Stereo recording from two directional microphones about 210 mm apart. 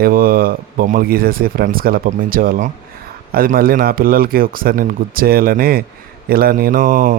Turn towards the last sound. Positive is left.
turn(degrees=-40)  # may be behind; listen again after turning